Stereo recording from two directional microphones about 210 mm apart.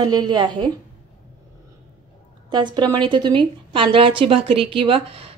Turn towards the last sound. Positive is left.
turn(degrees=-25)  # may be behind; listen again after turning